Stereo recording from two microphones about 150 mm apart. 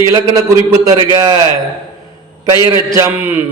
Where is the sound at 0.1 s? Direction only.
25° right (ahead or behind).